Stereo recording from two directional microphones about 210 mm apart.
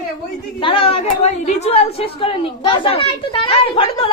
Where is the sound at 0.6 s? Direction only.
25° left (ahead or behind).